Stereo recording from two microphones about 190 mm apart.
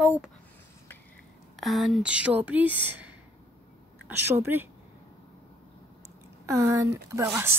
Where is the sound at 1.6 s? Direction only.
Centre (ahead or behind).